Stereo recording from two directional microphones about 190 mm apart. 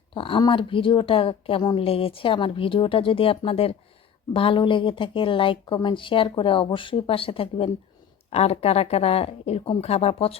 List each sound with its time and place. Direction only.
0.1 s a woman's voice: 25° left (ahead or behind)